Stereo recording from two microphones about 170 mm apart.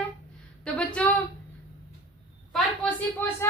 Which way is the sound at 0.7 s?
5° left (ahead or behind).